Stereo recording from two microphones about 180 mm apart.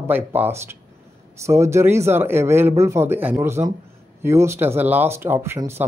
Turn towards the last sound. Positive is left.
turn(degrees=-15)  # may be behind; listen again after turning